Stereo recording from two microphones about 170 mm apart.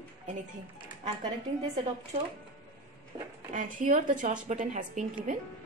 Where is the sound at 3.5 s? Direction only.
50° right (ahead or behind).